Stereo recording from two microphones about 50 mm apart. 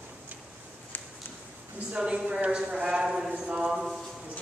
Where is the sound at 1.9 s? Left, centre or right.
Centre.